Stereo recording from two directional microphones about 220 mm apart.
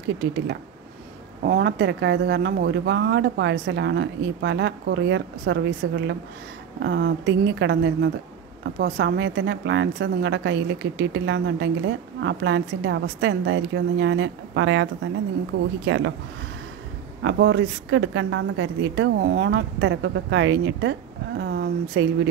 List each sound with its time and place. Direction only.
1.4 s a woman's voice: 45° right (ahead or behind)
17.2 s a woman's voice: 55° right (ahead or behind)